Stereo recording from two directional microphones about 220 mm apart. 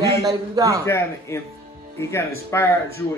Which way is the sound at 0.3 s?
15° right (ahead or behind).